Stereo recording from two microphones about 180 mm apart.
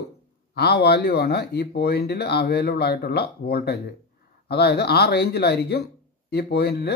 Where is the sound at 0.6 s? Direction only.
65° left (ahead or behind).